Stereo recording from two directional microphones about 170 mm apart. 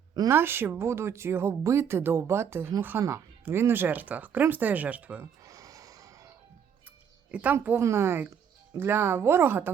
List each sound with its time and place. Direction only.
0.1 s speech: 20° right (ahead or behind)
5.4 s music: 20° right (ahead or behind)
7.3 s speech: 10° right (ahead or behind)